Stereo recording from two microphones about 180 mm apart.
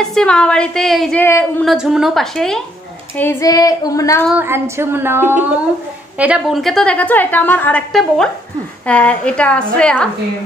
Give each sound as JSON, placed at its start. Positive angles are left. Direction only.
{"t": 0.0, "sound": "a woman's voice", "side_deg": 5}
{"t": 3.2, "sound": "child singing", "side_deg": 15}
{"t": 4.3, "sound": "a sound", "side_deg": -10}
{"t": 6.1, "sound": "a woman's voice", "side_deg": -5}